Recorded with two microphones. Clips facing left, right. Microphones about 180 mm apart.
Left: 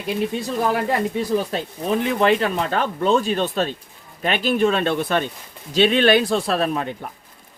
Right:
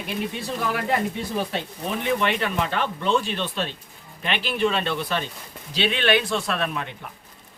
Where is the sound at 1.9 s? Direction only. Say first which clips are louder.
Left 6 dB; 35° left (ahead or behind).